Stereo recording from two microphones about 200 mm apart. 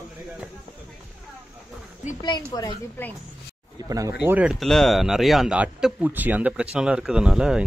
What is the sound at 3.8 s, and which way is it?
Speech, 15° right (ahead or behind).